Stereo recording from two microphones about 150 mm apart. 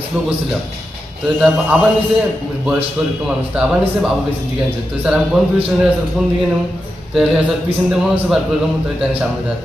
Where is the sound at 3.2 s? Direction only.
5° right (ahead or behind).